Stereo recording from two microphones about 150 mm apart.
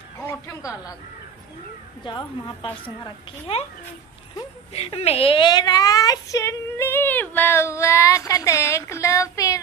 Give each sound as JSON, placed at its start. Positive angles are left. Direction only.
{"t": 0.2, "sound": "a sound", "side_deg": 20}
{"t": 2.0, "sound": "a woman's voice", "side_deg": 30}
{"t": 4.7, "sound": "a woman's voice", "side_deg": 45}